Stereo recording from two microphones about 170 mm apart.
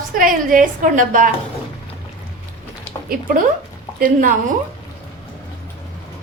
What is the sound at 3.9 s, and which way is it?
Speech, 55° right (ahead or behind).